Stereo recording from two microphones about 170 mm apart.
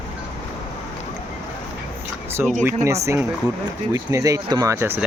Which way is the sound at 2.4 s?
10° right (ahead or behind).